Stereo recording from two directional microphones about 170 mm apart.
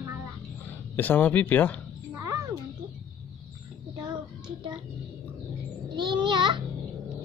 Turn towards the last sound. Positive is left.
turn(degrees=-30)  # may be behind; listen again after turning